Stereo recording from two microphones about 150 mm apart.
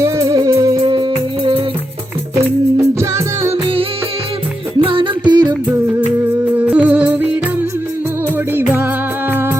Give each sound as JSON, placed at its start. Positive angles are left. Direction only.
{"t": 0.0, "sound": "music", "side_deg": -25}
{"t": 2.7, "sound": "music", "side_deg": -20}
{"t": 4.8, "sound": "music", "side_deg": -35}
{"t": 6.4, "sound": "music", "side_deg": -10}
{"t": 8.5, "sound": "music", "side_deg": -15}